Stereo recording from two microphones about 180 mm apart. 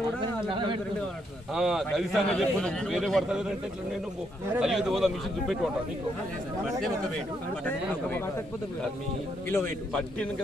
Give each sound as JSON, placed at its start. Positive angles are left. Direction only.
{"t": 0.2, "sound": "a sound", "side_deg": -30}
{"t": 1.5, "sound": "a man's voice", "side_deg": 0}
{"t": 9.5, "sound": "a man's voice", "side_deg": 10}